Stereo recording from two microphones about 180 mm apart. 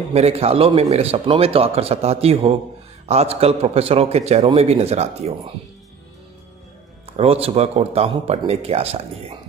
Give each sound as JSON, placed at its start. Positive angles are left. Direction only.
{"t": 0.1, "sound": "a man's voice", "side_deg": -35}
{"t": 7.2, "sound": "a man's voice", "side_deg": -35}